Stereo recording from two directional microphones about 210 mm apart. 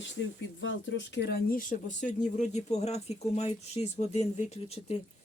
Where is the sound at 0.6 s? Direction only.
60° left (ahead or behind); by 4.9 s 30° left (ahead or behind).